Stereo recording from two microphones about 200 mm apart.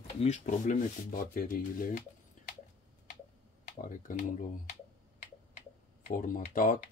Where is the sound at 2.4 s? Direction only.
40° left (ahead or behind).